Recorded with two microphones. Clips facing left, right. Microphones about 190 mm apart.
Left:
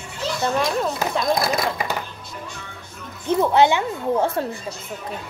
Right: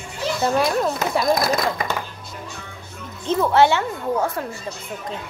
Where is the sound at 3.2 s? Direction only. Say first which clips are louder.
Even; 15° left (ahead or behind).